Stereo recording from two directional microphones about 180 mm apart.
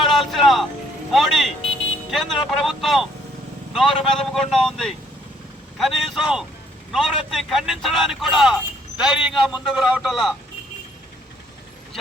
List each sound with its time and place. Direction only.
0.0 s vehicle: centre (ahead or behind)
1.1 s a man's voice: centre (ahead or behind)